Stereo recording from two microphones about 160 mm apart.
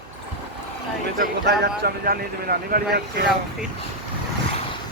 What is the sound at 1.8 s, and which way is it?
Speech, 75° right (ahead or behind).